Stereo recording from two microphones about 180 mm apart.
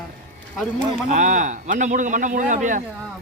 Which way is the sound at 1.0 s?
45° right (ahead or behind).